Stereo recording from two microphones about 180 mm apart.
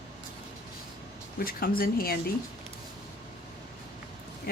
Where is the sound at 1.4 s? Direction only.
55° left (ahead or behind).